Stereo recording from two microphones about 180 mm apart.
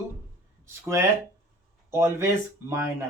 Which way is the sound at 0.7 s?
15° right (ahead or behind).